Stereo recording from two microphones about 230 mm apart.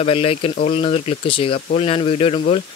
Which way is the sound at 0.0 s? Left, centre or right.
Left.